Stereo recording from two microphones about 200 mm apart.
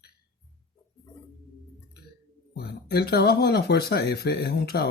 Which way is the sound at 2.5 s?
50° left (ahead or behind).